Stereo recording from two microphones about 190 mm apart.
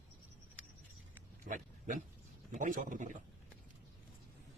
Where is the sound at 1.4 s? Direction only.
45° right (ahead or behind).